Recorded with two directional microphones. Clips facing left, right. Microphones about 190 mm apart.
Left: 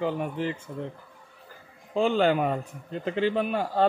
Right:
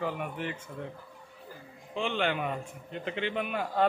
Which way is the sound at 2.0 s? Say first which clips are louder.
Left 8 dB; 40° left (ahead or behind).